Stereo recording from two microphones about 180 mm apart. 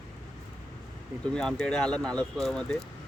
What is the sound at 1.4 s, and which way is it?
Speech, 5° left (ahead or behind).